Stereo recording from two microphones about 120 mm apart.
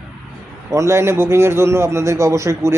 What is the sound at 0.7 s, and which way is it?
A man's voice, 25° right (ahead or behind).